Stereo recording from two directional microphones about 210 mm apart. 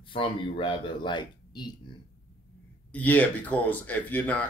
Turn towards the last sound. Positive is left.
turn(degrees=5)  # may be behind; listen again after turning